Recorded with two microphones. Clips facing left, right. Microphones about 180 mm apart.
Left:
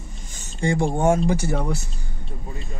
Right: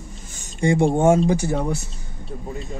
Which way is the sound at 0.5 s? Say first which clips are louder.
Right 4 dB; 20° right (ahead or behind).